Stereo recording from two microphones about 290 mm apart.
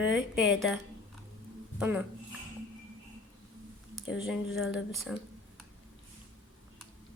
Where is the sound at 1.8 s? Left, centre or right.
Centre.